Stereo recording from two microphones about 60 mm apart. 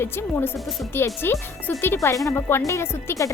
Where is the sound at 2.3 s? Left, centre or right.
Left.